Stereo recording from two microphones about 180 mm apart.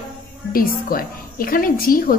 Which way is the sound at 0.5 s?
55° left (ahead or behind).